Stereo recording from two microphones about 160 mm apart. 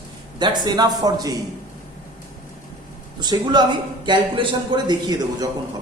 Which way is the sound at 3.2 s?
25° right (ahead or behind).